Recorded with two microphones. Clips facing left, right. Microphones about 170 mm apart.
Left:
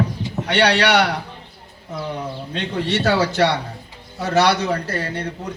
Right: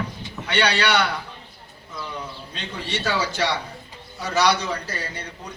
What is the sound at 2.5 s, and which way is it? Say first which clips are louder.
A man's voice: left 9 dB; 60° left (ahead or behind).